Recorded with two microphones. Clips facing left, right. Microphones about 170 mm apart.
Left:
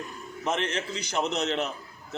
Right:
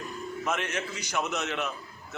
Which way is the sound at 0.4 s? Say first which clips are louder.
Left 3 dB; 30° left (ahead or behind).